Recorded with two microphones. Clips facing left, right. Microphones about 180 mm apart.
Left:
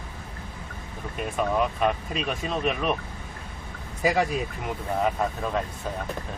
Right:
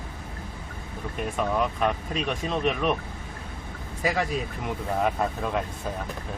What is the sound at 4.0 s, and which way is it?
Speech, 15° left (ahead or behind).